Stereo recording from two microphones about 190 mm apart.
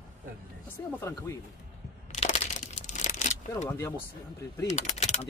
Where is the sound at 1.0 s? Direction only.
15° left (ahead or behind).